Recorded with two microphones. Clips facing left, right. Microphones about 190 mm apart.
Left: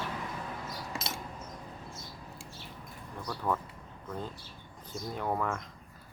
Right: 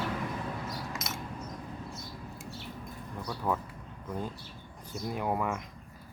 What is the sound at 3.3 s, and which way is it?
Speech, 10° right (ahead or behind).